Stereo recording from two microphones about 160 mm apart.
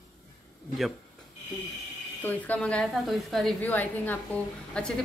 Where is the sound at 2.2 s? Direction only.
10° left (ahead or behind).